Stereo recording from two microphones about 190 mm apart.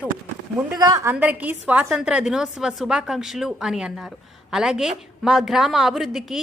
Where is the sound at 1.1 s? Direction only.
10° right (ahead or behind).